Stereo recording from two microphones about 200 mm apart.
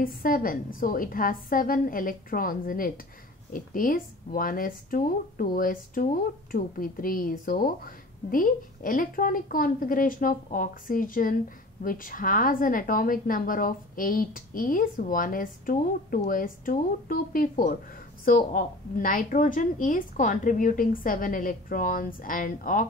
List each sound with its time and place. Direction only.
0.0 s speech: 45° left (ahead or behind)